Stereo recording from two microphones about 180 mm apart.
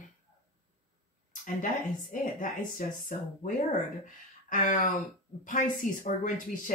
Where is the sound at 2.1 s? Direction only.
45° left (ahead or behind).